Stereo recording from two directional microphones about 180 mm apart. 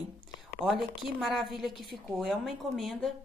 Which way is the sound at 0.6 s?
Centre (ahead or behind).